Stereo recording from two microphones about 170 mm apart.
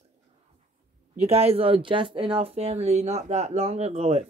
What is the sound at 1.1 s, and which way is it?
Speech, 40° right (ahead or behind).